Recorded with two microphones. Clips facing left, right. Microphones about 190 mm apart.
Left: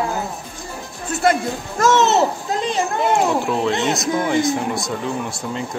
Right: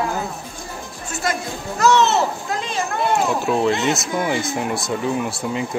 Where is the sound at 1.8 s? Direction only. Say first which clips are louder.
Left 1 dB; 45° left (ahead or behind).